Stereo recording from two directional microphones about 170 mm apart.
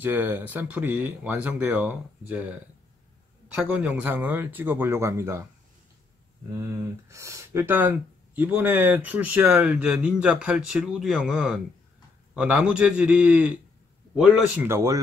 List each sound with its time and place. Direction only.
0.0 s speech: 10° right (ahead or behind)
3.5 s speech: 10° right (ahead or behind)
6.6 s speech: 15° right (ahead or behind)